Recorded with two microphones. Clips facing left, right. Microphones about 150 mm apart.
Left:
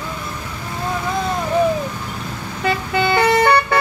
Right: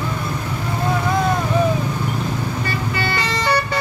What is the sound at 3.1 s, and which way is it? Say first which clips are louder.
Vehicle: left 8 dB; 60° left (ahead or behind).